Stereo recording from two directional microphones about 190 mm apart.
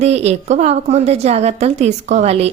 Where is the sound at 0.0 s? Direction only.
35° right (ahead or behind).